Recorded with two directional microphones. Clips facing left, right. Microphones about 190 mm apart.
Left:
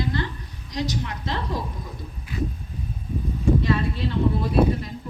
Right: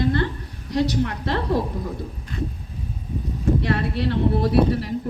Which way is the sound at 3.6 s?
65° right (ahead or behind).